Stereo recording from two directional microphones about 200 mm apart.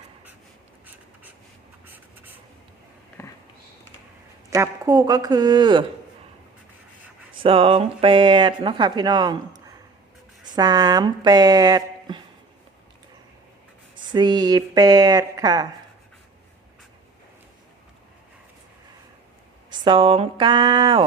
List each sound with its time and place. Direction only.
1.9 s writing: 10° right (ahead or behind)
3.2 s a sound: 15° left (ahead or behind)
4.5 s speech: 15° right (ahead or behind)
7.4 s speech: 30° right (ahead or behind)
10.4 s speech: 20° right (ahead or behind)
13.9 s speech: 20° right (ahead or behind)
19.8 s speech: 25° right (ahead or behind)